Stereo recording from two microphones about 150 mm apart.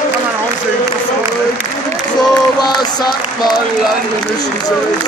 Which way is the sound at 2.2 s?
25° left (ahead or behind).